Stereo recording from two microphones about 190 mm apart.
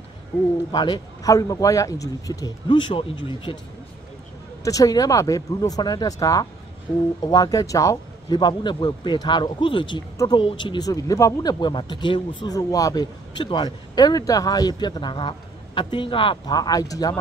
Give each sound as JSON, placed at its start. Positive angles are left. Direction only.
{"t": 0.7, "sound": "a man's voice", "side_deg": 25}
{"t": 4.6, "sound": "a man's voice", "side_deg": 20}